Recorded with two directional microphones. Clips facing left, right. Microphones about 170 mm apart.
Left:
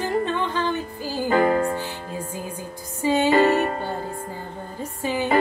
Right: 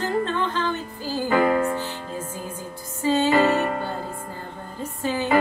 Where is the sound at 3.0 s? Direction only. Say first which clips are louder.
Left 1 dB; 15° left (ahead or behind).